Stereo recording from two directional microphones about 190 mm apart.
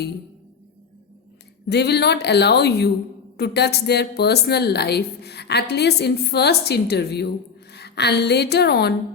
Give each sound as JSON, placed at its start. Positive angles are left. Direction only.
{"t": 1.6, "sound": "a woman's voice", "side_deg": 60}